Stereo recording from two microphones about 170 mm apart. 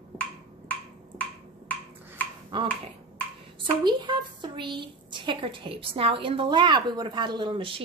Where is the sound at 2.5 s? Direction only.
30° right (ahead or behind).